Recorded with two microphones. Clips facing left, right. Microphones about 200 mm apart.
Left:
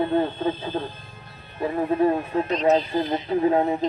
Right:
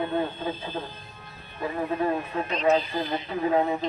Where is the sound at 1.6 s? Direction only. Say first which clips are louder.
Left 6 dB; 35° left (ahead or behind).